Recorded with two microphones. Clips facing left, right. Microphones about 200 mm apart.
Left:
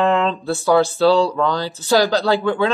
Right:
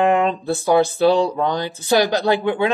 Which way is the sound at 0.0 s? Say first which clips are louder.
Right 1 dB; 15° right (ahead or behind).